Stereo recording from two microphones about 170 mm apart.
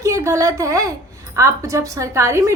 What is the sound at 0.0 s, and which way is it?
A woman's voice, 15° right (ahead or behind).